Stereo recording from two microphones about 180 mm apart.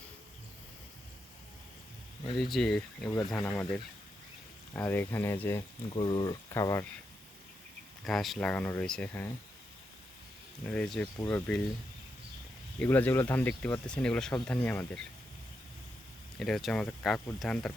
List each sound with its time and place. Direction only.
2.4 s speech: centre (ahead or behind)
3.1 s speech: 20° left (ahead or behind)
6.0 s speech: 25° left (ahead or behind)
8.0 s speech: centre (ahead or behind)
10.7 s speech: 5° left (ahead or behind)
12.8 s speech: 10° left (ahead or behind)
16.4 s speech: centre (ahead or behind)